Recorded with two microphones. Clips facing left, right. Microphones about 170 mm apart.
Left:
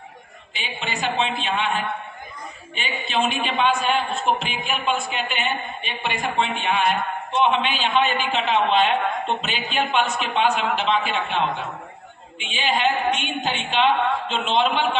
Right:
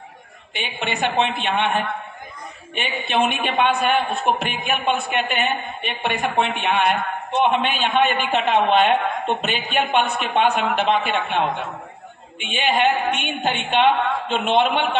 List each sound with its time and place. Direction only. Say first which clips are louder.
0.5 s a man's voice: right 4 dB; 60° right (ahead or behind)
2.7 s a man's voice: right 3 dB; 60° right (ahead or behind)